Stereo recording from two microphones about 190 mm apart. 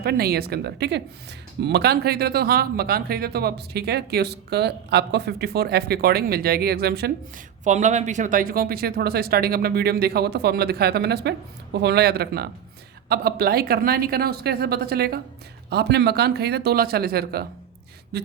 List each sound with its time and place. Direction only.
0.0 s speech: 55° right (ahead or behind)
7.6 s speech: 40° right (ahead or behind)